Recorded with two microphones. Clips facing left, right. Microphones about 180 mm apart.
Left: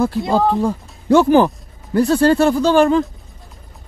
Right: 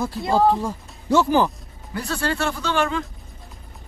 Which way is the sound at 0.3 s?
60° left (ahead or behind).